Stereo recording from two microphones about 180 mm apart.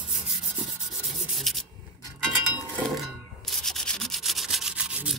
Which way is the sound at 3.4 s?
Centre (ahead or behind).